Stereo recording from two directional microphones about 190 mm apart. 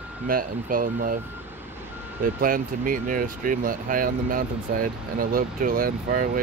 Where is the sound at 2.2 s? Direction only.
45° right (ahead or behind).